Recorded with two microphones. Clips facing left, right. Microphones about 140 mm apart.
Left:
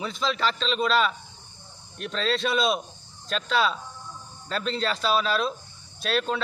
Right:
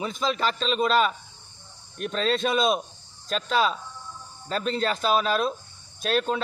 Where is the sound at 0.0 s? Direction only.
45° right (ahead or behind).